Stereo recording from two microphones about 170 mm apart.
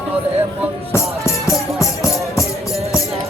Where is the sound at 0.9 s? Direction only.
15° left (ahead or behind).